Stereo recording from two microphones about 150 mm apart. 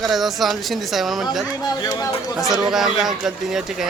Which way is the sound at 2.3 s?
Centre (ahead or behind).